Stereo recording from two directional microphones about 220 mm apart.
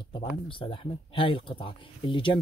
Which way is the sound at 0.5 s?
25° left (ahead or behind).